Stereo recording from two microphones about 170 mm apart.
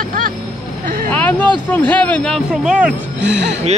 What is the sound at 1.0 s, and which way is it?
Speech, 10° left (ahead or behind).